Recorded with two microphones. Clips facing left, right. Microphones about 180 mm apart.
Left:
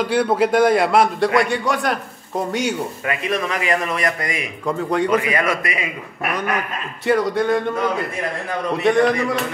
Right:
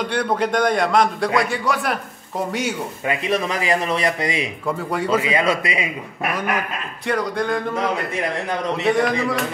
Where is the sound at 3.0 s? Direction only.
25° right (ahead or behind).